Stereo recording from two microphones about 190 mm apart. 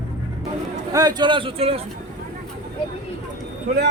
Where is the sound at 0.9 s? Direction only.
20° right (ahead or behind).